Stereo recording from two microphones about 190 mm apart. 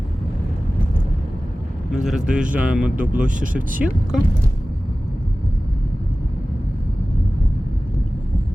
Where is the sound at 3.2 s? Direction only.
45° right (ahead or behind).